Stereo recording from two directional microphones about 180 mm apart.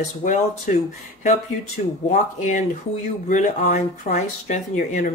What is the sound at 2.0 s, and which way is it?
Speech, 40° left (ahead or behind).